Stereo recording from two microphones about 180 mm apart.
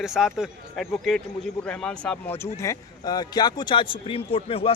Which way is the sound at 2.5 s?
20° left (ahead or behind).